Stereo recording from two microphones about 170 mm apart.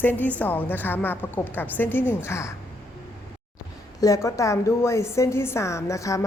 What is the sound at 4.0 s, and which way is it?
A woman's voice, 20° left (ahead or behind).